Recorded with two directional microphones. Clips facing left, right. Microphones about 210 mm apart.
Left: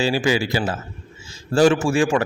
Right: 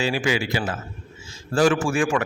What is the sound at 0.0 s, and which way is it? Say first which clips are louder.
A man's voice: left 3 dB; 30° left (ahead or behind).